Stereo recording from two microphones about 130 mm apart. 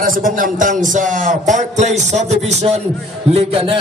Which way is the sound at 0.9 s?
80° right.